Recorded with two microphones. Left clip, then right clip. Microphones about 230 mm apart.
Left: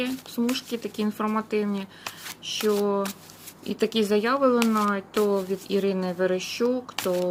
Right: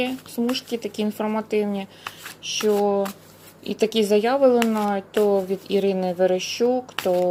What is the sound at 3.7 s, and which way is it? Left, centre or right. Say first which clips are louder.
Speech: right 4 dB; centre.